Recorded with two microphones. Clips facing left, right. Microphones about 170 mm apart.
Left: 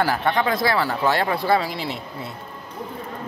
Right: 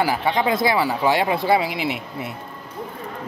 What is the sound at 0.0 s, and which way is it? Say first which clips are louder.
Speech: right 1 dB; 10° right (ahead or behind).